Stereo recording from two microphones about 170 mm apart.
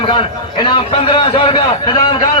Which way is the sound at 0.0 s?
30° left (ahead or behind).